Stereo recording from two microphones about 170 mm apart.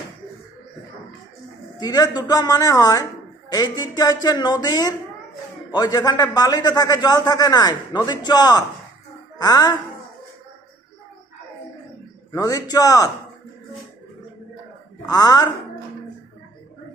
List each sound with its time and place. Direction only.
1.8 s speech: 25° left (ahead or behind)
12.3 s speech: 20° left (ahead or behind)
15.0 s speech: 20° left (ahead or behind)